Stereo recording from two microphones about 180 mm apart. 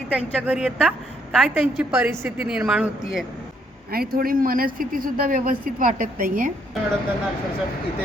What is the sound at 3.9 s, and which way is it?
A man's voice, 55° right (ahead or behind).